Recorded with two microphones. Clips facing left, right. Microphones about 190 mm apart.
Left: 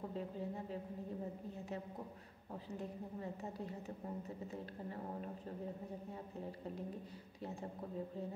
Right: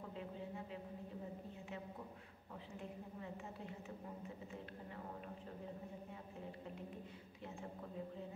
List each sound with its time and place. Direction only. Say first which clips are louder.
0.1 s a woman's voice: left 5 dB; 40° left (ahead or behind)
2.7 s a woman's voice: left 5 dB; 40° left (ahead or behind)
4.5 s a sound: left 5 dB; 40° left (ahead or behind)